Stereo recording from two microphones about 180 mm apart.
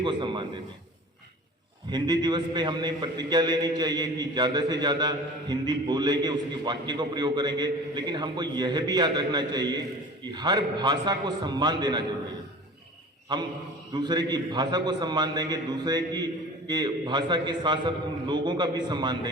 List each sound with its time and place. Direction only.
0.0 s a man's voice: 25° right (ahead or behind)
1.9 s a man's voice: 25° right (ahead or behind)
13.3 s a man's voice: 25° right (ahead or behind)